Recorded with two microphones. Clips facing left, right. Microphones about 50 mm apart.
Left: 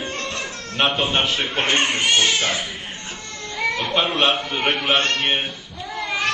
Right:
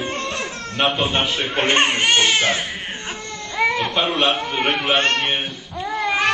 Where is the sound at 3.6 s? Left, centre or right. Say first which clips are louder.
Right 4 dB; right.